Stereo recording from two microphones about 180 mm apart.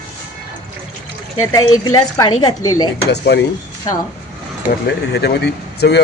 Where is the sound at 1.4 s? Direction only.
20° left (ahead or behind).